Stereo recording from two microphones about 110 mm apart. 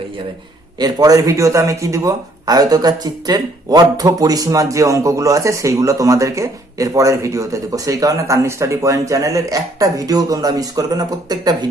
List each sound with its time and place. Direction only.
0.8 s speech: 35° right (ahead or behind)